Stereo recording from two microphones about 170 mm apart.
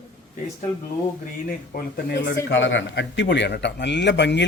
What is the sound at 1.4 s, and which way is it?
Speech, 60° left (ahead or behind).